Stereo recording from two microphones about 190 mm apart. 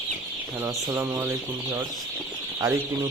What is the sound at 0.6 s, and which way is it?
Speech, 10° right (ahead or behind).